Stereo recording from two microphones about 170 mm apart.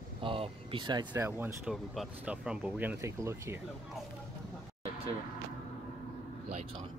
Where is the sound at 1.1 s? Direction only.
10° right (ahead or behind).